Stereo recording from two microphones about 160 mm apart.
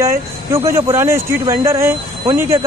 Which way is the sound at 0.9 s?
15° right (ahead or behind).